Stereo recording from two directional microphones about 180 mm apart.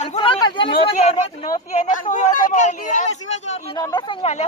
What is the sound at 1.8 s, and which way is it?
Speech, 45° left (ahead or behind).